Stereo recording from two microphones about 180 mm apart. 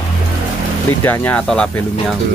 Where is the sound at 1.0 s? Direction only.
10° left (ahead or behind).